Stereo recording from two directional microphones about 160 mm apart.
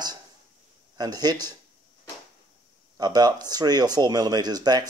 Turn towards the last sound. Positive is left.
turn(degrees=-25)  # may be behind; listen again after turning